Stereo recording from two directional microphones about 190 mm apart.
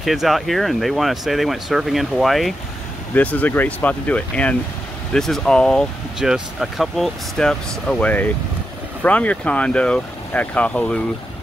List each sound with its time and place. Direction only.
0.0 s speech: centre (ahead or behind)